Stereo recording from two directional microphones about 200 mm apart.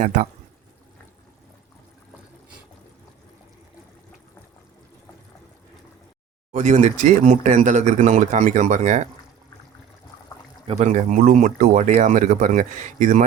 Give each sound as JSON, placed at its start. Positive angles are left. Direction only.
{"t": 0.0, "sound": "speech", "side_deg": -40}
{"t": 6.5, "sound": "speech", "side_deg": -35}
{"t": 10.7, "sound": "speech", "side_deg": -35}